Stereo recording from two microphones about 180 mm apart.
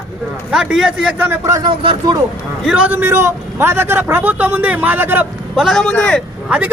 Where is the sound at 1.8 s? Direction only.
30° right (ahead or behind).